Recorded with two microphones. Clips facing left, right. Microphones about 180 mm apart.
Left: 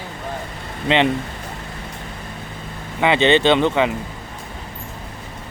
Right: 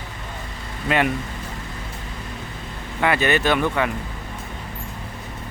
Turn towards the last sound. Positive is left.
turn(degrees=20)  # may be behind; listen again after turning